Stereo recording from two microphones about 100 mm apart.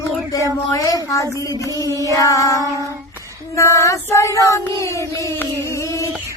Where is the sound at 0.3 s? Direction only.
35° left (ahead or behind).